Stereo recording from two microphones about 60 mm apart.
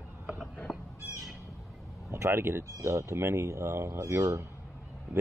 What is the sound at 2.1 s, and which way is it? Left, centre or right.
Speech, right.